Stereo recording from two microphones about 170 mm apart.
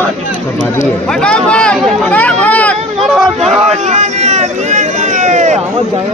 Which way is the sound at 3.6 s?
45° right (ahead or behind).